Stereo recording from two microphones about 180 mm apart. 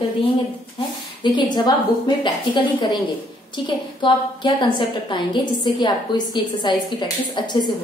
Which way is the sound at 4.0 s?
25° left (ahead or behind).